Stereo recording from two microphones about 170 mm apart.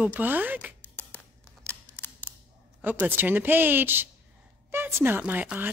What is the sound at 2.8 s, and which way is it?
A child's voice, 10° right (ahead or behind).